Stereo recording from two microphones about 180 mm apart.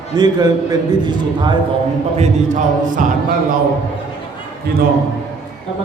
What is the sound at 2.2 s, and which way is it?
Speech, 45° right (ahead or behind).